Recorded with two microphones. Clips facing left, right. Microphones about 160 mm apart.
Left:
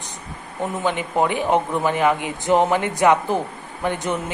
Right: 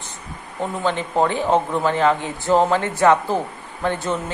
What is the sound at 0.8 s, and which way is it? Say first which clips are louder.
Speech: right 1 dB; 15° left (ahead or behind).